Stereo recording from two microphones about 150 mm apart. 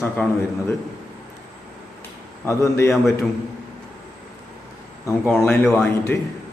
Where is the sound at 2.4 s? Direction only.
15° left (ahead or behind).